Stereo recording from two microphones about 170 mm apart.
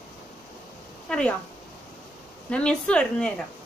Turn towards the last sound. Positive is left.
turn(degrees=5)  # may be behind; listen again after turning